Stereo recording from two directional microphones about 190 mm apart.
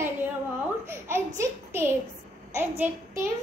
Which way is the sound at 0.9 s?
15° right (ahead or behind).